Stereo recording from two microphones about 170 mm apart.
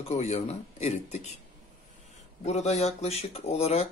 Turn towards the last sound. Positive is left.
turn(degrees=40)  # may be behind; listen again after turning